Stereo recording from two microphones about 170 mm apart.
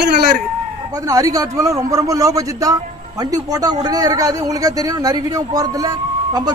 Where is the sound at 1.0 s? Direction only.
20° right (ahead or behind).